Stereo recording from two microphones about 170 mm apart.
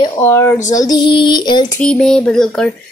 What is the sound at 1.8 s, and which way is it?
Speech, 5° left (ahead or behind).